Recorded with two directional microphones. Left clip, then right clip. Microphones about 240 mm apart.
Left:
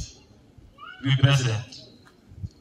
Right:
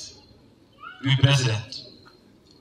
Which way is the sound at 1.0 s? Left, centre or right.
Right.